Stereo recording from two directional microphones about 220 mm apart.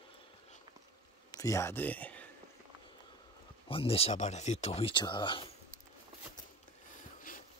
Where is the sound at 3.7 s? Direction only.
25° left (ahead or behind).